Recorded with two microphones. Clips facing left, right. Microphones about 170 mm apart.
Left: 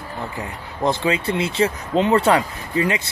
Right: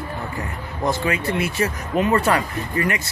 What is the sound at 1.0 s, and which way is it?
Speech, 20° left (ahead or behind).